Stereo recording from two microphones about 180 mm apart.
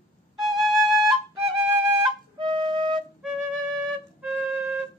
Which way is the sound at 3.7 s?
Centre (ahead or behind).